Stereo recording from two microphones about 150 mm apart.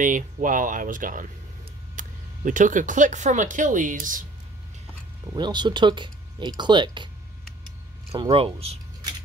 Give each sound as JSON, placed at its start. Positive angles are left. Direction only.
{"t": 0.0, "sound": "speech", "side_deg": -60}
{"t": 5.2, "sound": "speech", "side_deg": -30}
{"t": 8.1, "sound": "speech", "side_deg": -40}